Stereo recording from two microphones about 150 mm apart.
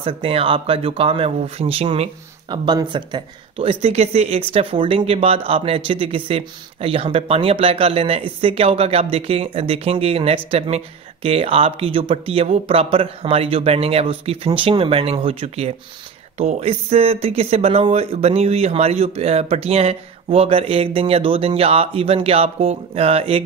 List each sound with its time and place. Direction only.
0.0 s speech: 40° right (ahead or behind)
2.5 s speech: 30° right (ahead or behind)